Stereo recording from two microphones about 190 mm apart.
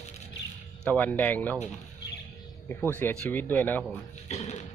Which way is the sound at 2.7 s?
10° left (ahead or behind).